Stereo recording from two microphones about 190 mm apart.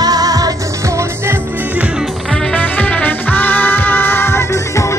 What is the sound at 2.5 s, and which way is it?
Music, 10° left (ahead or behind).